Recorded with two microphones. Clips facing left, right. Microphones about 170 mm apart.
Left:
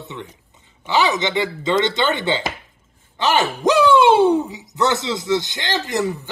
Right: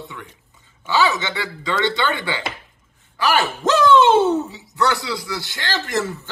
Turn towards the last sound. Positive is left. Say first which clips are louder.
# left 2 dB
turn(degrees=15)  # may be behind; listen again after turning